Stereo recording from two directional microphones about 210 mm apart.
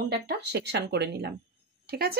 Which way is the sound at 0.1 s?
50° right (ahead or behind).